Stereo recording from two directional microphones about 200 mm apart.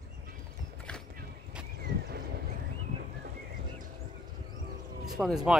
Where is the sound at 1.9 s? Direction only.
50° right (ahead or behind).